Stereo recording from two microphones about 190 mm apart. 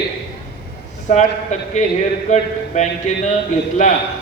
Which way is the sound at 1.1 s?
40° left (ahead or behind).